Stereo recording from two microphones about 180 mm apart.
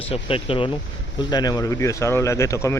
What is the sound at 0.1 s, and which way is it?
Speech, 30° left (ahead or behind).